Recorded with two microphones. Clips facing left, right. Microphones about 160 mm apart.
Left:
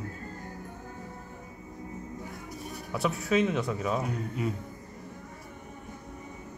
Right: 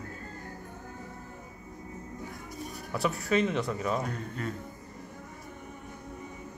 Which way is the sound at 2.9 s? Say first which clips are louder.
Left 1 dB; centre (ahead or behind).